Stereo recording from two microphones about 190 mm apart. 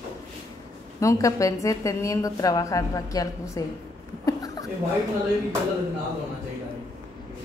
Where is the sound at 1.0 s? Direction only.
15° left (ahead or behind).